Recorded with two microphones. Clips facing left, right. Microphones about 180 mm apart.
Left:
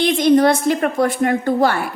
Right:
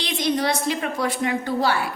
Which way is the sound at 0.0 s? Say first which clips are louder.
Left 10 dB; 55° left (ahead or behind).